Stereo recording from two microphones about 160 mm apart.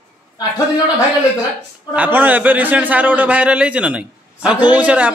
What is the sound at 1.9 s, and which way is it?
A man's voice, 10° right (ahead or behind).